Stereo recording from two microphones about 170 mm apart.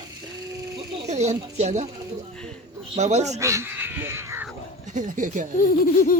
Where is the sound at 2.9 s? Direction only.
40° right (ahead or behind).